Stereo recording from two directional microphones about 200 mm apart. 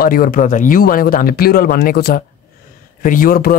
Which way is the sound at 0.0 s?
45° left (ahead or behind).